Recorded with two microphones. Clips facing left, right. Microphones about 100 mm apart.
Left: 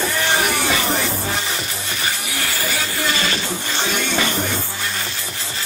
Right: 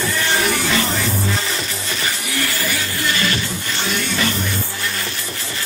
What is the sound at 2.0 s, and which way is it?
Music, 20° left (ahead or behind).